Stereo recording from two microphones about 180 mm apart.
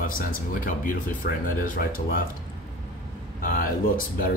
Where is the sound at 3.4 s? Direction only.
50° left (ahead or behind).